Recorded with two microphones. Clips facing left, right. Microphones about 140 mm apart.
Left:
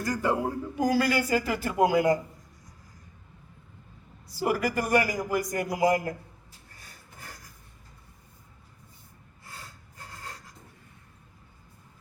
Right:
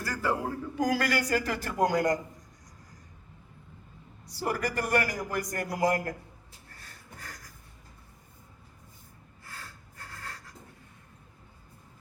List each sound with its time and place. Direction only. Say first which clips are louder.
0.0 s speech: left 3 dB; 20° left (ahead or behind)
0.8 s a man's voice: left 3 dB; 5° left (ahead or behind)
4.4 s a man's voice: left 4 dB; 10° left (ahead or behind)
9.4 s snort: even; 20° left (ahead or behind)